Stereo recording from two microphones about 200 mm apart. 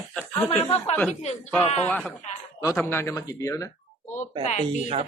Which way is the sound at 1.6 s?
35° left (ahead or behind).